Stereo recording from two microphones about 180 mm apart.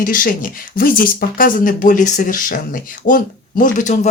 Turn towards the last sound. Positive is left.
turn(degrees=45)  # may be behind; listen again after turning